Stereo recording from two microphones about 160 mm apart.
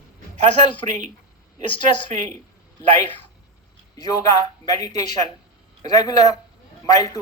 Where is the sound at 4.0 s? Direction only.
20° left (ahead or behind).